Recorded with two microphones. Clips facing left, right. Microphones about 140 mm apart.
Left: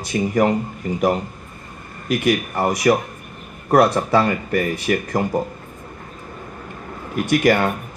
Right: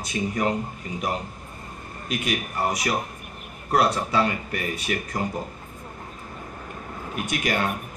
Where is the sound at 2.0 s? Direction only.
70° left (ahead or behind).